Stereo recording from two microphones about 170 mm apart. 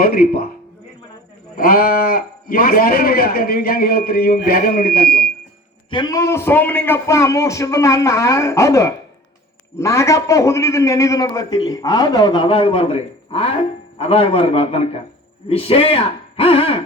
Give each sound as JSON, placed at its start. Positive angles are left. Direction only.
{"t": 0.0, "sound": "speech", "side_deg": 60}
{"t": 1.5, "sound": "speech", "side_deg": 60}
{"t": 5.9, "sound": "a man's voice", "side_deg": 25}